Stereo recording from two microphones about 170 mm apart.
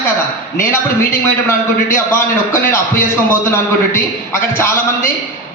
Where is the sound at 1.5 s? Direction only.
15° left (ahead or behind).